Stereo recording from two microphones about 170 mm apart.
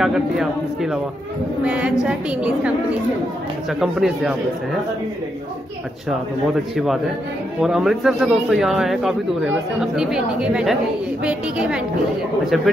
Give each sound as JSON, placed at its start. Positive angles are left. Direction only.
{"t": 0.0, "sound": "a sound", "side_deg": 0}
{"t": 1.6, "sound": "a woman's voice", "side_deg": -5}
{"t": 3.8, "sound": "speech", "side_deg": -5}
{"t": 7.6, "sound": "speech", "side_deg": 0}